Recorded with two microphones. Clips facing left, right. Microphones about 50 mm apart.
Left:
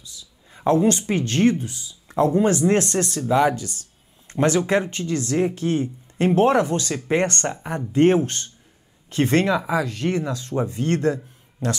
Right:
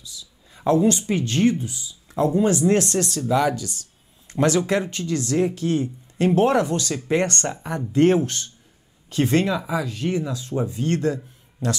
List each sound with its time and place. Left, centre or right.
0.0 s a sound: left
0.7 s speech: left
9.1 s speech: left